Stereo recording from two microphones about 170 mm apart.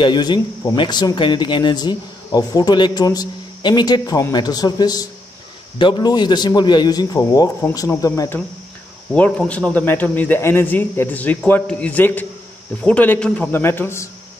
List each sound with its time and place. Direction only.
0.0 s speech: 25° left (ahead or behind)